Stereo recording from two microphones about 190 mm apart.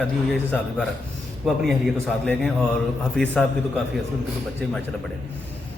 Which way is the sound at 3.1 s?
5° left (ahead or behind).